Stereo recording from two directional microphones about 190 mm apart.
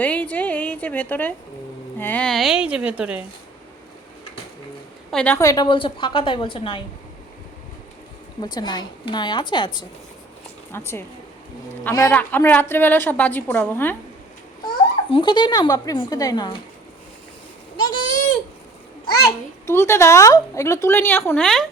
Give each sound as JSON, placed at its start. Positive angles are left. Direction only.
{"t": 0.0, "sound": "a woman's voice", "side_deg": 5}
{"t": 5.1, "sound": "a woman's voice", "side_deg": 10}
{"t": 8.4, "sound": "a woman's voice", "side_deg": 20}
{"t": 10.7, "sound": "a woman's voice", "side_deg": 10}
{"t": 15.1, "sound": "a woman's voice", "side_deg": 25}
{"t": 17.7, "sound": "a sound", "side_deg": 20}
{"t": 19.6, "sound": "a woman's voice", "side_deg": 15}